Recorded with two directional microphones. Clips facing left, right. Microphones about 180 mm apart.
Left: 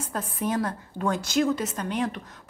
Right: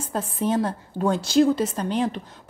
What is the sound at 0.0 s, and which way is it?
A woman's voice, 30° right (ahead or behind).